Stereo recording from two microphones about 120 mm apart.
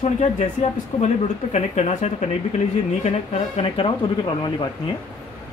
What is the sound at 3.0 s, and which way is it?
Speech, 55° left (ahead or behind).